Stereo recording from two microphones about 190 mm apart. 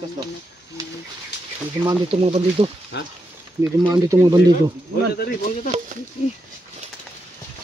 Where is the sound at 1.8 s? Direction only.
30° right (ahead or behind).